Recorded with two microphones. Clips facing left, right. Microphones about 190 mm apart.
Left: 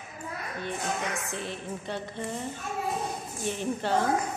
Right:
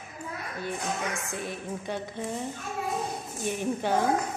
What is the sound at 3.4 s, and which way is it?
Speech, 15° right (ahead or behind).